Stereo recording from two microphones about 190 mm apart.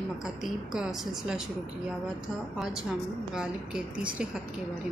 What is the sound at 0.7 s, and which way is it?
Speech, 5° right (ahead or behind).